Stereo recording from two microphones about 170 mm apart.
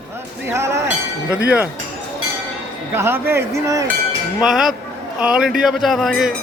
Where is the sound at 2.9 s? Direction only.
15° right (ahead or behind).